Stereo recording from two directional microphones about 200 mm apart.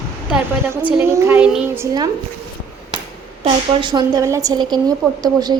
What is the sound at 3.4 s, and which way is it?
A woman's voice, 25° right (ahead or behind).